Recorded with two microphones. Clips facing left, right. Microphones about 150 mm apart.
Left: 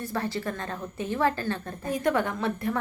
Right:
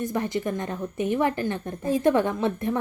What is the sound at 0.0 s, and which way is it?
A woman's voice, 20° right (ahead or behind).